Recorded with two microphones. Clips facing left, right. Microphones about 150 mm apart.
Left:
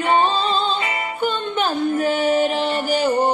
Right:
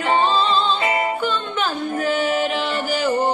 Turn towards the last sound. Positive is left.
turn(degrees=40)  # may be behind; listen again after turning